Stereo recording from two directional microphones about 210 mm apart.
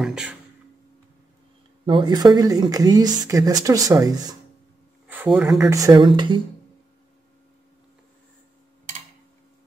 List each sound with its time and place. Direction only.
0.0 s a sound: 5° right (ahead or behind)
1.9 s speech: 20° right (ahead or behind); by 5.7 s centre (ahead or behind)
5.7 s speech: 15° right (ahead or behind)